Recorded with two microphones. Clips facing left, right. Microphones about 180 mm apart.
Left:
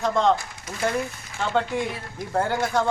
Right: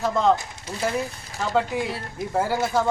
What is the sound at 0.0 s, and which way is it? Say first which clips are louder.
Speech: even; 5° right (ahead or behind).